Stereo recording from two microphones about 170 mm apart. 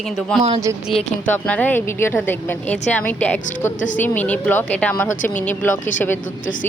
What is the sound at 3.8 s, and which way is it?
Speech, 50° left (ahead or behind).